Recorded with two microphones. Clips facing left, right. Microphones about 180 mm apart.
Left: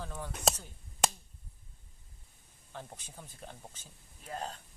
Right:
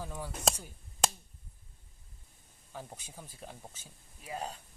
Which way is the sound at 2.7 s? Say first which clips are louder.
Right 1 dB; 10° right (ahead or behind).